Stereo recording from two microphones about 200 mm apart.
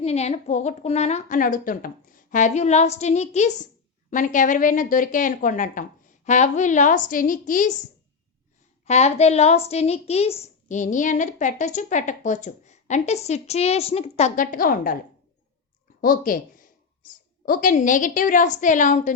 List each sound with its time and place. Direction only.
0.0 s a woman's voice: 30° left (ahead or behind)
8.8 s a woman's voice: 35° left (ahead or behind)
16.0 s speech: 45° left (ahead or behind)
17.4 s a woman's voice: 45° left (ahead or behind)